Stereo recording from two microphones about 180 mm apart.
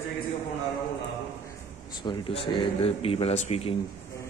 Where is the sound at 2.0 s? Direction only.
25° left (ahead or behind).